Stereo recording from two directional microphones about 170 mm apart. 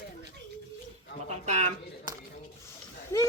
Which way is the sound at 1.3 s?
45° right (ahead or behind).